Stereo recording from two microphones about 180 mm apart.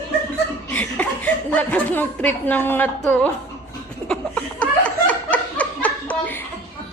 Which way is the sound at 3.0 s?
5° left (ahead or behind).